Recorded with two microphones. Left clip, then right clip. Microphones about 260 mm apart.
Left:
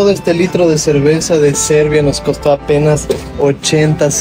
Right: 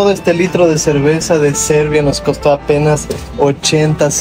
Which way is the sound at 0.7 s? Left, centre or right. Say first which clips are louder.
Left 1 dB; centre.